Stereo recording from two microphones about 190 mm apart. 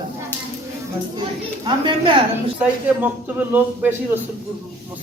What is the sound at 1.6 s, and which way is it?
Speech, 25° right (ahead or behind).